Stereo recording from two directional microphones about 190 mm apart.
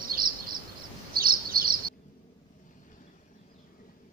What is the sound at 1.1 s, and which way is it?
Chirp, 50° right (ahead or behind).